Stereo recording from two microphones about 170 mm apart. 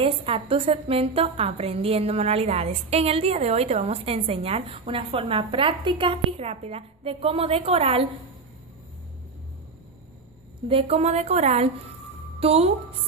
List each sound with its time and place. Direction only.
0.0 s a woman's voice: 35° right (ahead or behind)
10.7 s a woman's voice: 35° right (ahead or behind)